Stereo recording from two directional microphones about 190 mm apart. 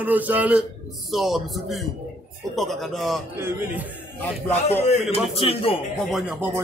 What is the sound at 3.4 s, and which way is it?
Speech, 15° right (ahead or behind).